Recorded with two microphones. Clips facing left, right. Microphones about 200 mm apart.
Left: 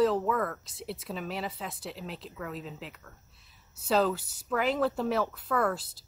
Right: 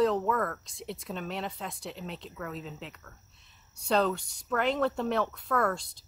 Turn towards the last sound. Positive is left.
turn(degrees=5)  # may be behind; listen again after turning